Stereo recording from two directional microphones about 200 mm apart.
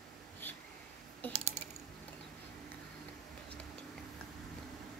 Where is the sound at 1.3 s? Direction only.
35° right (ahead or behind).